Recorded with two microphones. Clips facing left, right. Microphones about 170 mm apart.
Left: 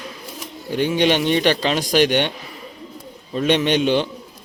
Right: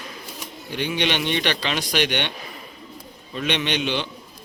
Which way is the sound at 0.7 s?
45° left (ahead or behind).